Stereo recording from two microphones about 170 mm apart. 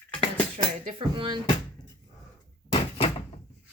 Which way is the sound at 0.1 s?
5° left (ahead or behind).